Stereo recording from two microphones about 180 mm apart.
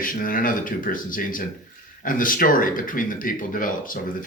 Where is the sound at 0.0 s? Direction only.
50° left (ahead or behind).